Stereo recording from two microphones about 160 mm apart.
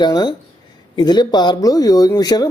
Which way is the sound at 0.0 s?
25° left (ahead or behind).